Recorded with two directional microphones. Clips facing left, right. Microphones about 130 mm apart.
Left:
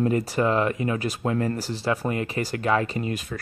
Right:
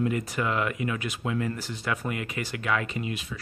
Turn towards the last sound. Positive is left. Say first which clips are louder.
# left 4 dB
turn(degrees=45)  # may be behind; listen again after turning